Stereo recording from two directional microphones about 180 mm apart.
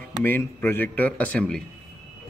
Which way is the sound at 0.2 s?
10° left (ahead or behind).